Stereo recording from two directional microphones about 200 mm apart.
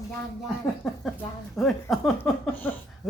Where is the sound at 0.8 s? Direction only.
Centre (ahead or behind).